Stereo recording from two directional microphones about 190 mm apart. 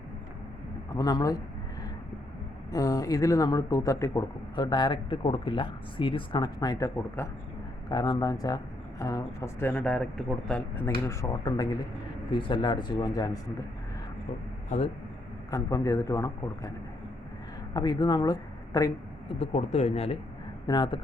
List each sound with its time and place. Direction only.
0.9 s a man's voice: 20° left (ahead or behind)
2.7 s speech: 20° left (ahead or behind)
15.4 s speech: 20° left (ahead or behind)
17.7 s speech: 20° left (ahead or behind)
19.3 s speech: 30° left (ahead or behind)